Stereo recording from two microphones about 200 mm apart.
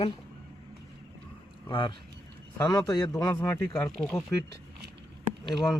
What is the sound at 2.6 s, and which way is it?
A man's voice, 20° left (ahead or behind).